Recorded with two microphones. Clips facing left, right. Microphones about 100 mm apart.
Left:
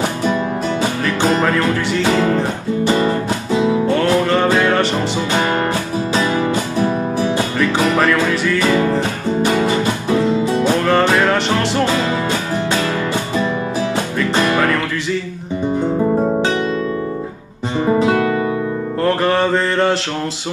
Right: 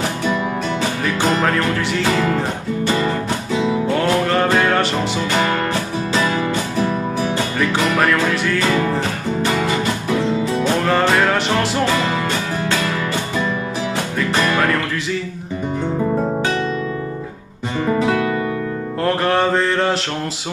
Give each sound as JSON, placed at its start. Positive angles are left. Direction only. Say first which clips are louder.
{"t": 1.0, "sound": "mantra", "louder": "left 1 dB", "side_deg": 0}
{"t": 4.0, "sound": "music", "louder": "left 2 dB", "side_deg": 0}
{"t": 8.0, "sound": "mantra", "louder": "left 2 dB", "side_deg": 0}
{"t": 10.9, "sound": "music", "louder": "left 1 dB", "side_deg": 0}
{"t": 14.3, "sound": "music", "louder": "left 2 dB", "side_deg": 20}
{"t": 17.8, "sound": "music", "louder": "left 3 dB", "side_deg": 25}
{"t": 19.0, "sound": "mantra", "louder": "left 1 dB", "side_deg": 0}